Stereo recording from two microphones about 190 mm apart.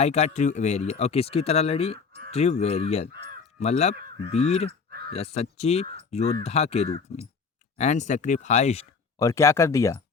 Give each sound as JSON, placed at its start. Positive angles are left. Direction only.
{"t": 0.0, "sound": "speech", "side_deg": 35}
{"t": 4.9, "sound": "crow", "side_deg": -55}
{"t": 5.1, "sound": "speech", "side_deg": 35}
{"t": 9.1, "sound": "speech", "side_deg": 15}